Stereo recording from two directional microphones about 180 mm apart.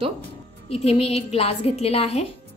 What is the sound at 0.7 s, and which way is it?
A woman's voice, 35° left (ahead or behind).